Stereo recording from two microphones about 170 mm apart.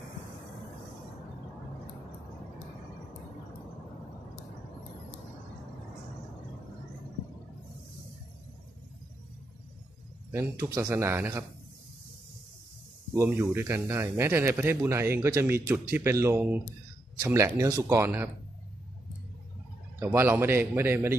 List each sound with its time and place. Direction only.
10.3 s a man's voice: 15° right (ahead or behind)
13.1 s a man's voice: 15° right (ahead or behind)
20.0 s a man's voice: 10° right (ahead or behind)